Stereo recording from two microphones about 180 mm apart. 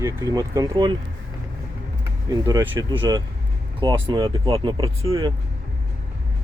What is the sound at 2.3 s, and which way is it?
Speech, 20° right (ahead or behind).